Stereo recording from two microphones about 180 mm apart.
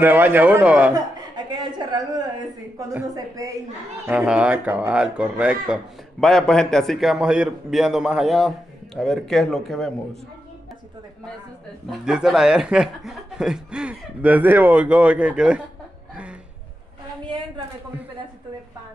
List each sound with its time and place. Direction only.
0.0 s speech: 10° right (ahead or behind)
0.9 s a sound: 20° right (ahead or behind)
2.9 s speech: 15° right (ahead or behind)
4.0 s a man's voice: 5° right (ahead or behind)
12.0 s a man's voice: 5° right (ahead or behind)